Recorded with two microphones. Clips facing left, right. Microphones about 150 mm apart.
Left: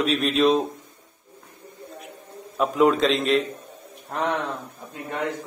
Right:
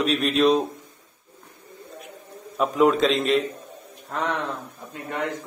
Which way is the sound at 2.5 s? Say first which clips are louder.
Even; centre (ahead or behind).